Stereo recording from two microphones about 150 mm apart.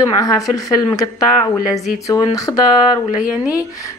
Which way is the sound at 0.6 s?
25° left (ahead or behind).